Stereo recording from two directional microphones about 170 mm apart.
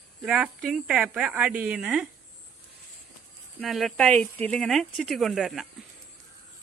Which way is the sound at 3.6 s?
Centre (ahead or behind).